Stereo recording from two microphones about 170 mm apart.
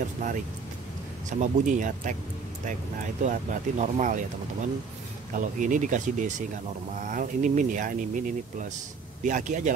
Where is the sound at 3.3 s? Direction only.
45° right (ahead or behind).